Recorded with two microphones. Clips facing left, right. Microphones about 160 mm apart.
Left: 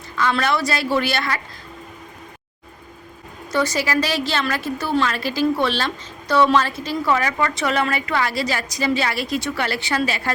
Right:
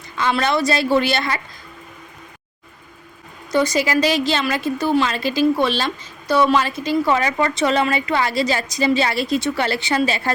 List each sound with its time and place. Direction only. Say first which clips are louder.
0.2 s a woman's voice: right 1 dB; 20° right (ahead or behind)
3.5 s a woman's voice: right 3 dB; 15° right (ahead or behind)